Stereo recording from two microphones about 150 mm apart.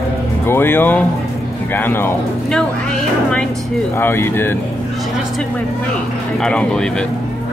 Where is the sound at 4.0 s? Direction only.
15° left (ahead or behind).